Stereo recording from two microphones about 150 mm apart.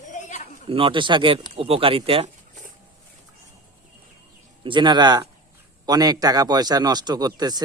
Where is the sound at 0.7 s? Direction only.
35° right (ahead or behind).